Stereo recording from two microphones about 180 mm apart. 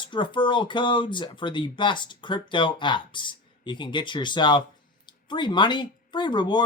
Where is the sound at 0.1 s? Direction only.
25° left (ahead or behind).